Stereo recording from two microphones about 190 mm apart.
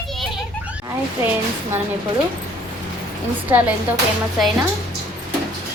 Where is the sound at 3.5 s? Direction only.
10° right (ahead or behind).